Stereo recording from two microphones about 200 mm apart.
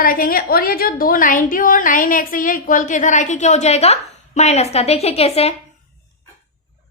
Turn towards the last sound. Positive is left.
turn(degrees=30)  # may be behind; listen again after turning